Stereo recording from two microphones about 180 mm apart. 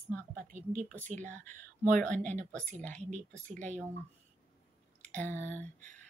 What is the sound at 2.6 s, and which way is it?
Speech, 5° left (ahead or behind).